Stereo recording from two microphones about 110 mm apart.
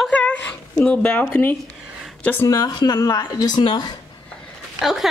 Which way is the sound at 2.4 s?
35° left (ahead or behind).